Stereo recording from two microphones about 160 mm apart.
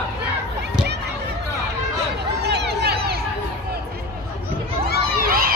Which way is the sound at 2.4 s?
90° right.